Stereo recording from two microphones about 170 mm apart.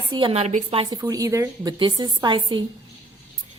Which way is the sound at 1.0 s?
20° right (ahead or behind).